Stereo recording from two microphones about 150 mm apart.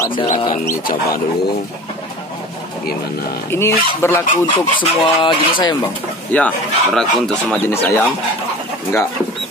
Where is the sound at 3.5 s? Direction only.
15° left (ahead or behind).